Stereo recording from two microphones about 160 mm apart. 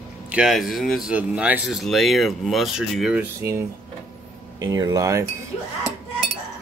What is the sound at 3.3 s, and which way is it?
Speech, 15° right (ahead or behind).